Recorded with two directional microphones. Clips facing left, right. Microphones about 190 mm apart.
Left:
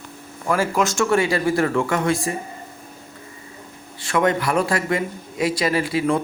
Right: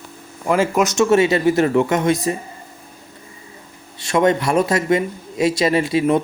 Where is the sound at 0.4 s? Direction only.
20° right (ahead or behind).